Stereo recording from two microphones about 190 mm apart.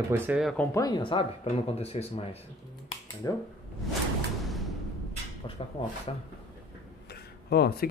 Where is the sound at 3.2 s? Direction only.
15° left (ahead or behind).